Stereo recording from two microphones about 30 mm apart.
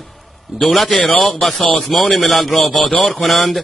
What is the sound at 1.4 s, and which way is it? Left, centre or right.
A man's voice, centre.